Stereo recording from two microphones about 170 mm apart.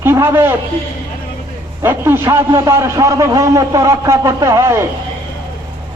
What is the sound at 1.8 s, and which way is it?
A man's voice, 15° right (ahead or behind).